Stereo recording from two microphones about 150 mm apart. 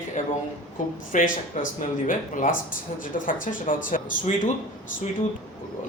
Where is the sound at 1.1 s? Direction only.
65° left (ahead or behind).